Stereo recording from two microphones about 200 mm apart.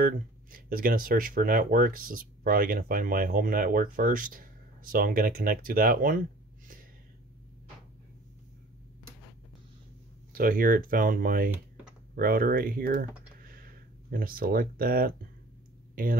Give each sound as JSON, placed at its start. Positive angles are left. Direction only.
{"t": 0.0, "sound": "speech", "side_deg": -45}
{"t": 10.3, "sound": "speech", "side_deg": -45}
{"t": 15.9, "sound": "a sound", "side_deg": -45}